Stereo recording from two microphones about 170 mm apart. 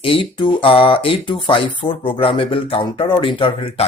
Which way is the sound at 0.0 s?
30° left (ahead or behind).